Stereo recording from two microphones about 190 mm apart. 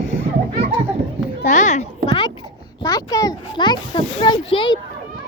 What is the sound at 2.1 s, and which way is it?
Babbling, 25° left (ahead or behind).